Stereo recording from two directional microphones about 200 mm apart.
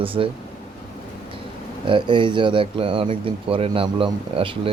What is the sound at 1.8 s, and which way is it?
Speech, 25° right (ahead or behind).